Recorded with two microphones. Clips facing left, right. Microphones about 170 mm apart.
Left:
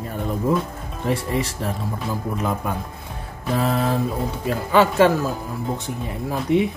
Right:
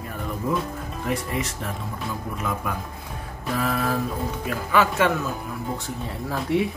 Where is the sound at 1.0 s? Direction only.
30° left (ahead or behind).